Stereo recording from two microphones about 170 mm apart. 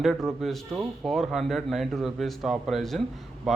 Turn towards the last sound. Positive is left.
turn(degrees=0)  # may be behind; listen again after turning